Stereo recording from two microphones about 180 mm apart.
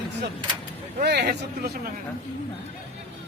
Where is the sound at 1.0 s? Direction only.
60° right (ahead or behind).